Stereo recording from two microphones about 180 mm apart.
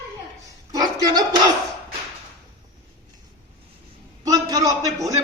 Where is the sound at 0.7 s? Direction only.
20° right (ahead or behind).